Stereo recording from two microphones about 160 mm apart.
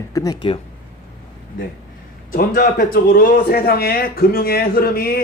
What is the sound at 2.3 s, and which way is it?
A man's voice, 65° left (ahead or behind).